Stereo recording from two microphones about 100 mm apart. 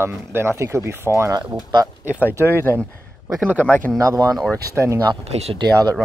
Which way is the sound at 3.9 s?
35° right (ahead or behind).